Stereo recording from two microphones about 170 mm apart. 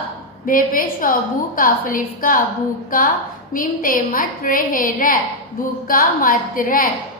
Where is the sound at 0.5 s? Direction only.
55° left (ahead or behind).